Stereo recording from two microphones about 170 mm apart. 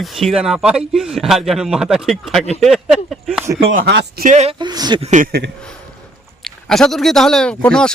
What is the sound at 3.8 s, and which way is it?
Speech, 80° right.